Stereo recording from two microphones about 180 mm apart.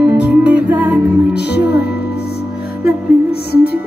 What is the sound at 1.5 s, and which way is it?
Music, 65° left (ahead or behind).